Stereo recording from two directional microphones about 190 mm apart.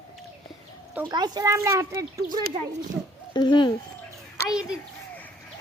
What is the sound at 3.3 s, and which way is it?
Speech, 25° left (ahead or behind).